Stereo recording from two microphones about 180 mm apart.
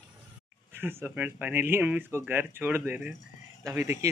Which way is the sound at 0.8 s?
10° right (ahead or behind).